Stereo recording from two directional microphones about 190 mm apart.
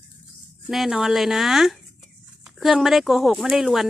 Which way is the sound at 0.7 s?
Centre (ahead or behind).